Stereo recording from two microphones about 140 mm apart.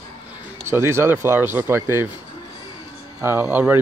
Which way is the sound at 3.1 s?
15° right (ahead or behind).